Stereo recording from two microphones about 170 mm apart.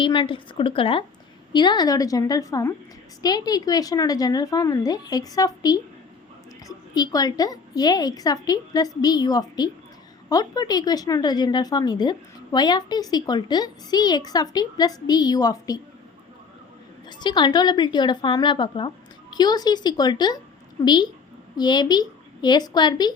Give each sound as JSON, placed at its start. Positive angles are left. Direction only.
{"t": 0.0, "sound": "a woman's voice", "side_deg": 30}
{"t": 17.1, "sound": "a woman's voice", "side_deg": 25}